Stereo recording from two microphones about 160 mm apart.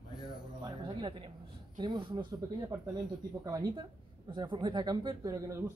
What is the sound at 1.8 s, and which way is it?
Speech, 30° right (ahead or behind).